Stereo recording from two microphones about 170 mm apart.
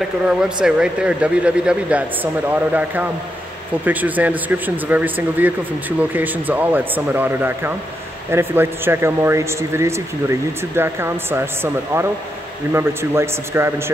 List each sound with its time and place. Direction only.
0.3 s speech: 5° right (ahead or behind)